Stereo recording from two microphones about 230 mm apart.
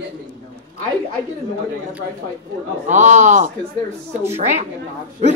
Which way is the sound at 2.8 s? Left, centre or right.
Right.